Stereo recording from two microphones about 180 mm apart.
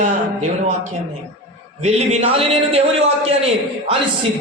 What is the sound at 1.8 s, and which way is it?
A man's voice, 35° right (ahead or behind).